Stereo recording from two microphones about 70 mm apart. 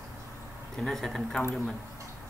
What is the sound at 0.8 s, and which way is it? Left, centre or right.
Speech, centre.